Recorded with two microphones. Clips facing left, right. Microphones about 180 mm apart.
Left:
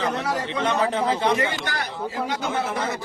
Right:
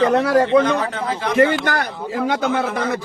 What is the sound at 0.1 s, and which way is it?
Speech, 65° right (ahead or behind).